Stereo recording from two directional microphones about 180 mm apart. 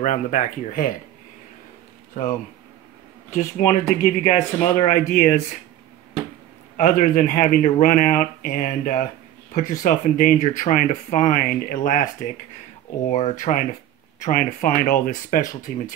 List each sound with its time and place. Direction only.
0.0 s speech: 45° left (ahead or behind)
3.3 s speech: 40° left (ahead or behind)
6.8 s speech: 45° left (ahead or behind)